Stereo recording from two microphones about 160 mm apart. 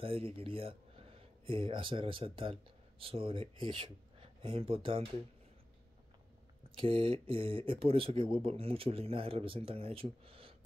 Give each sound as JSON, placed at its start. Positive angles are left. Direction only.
{"t": 0.0, "sound": "speech", "side_deg": -35}
{"t": 6.8, "sound": "speech", "side_deg": -35}